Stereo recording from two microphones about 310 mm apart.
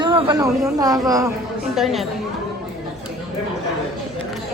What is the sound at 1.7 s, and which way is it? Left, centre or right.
Speech, centre.